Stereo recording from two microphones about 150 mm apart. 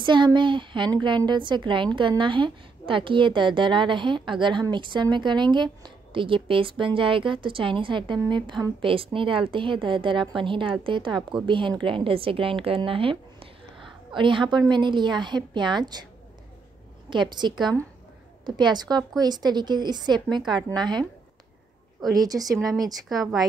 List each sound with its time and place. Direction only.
0.0 s a woman's voice: 30° right (ahead or behind)
17.1 s a woman's voice: 30° right (ahead or behind)
22.0 s a woman's voice: 25° right (ahead or behind)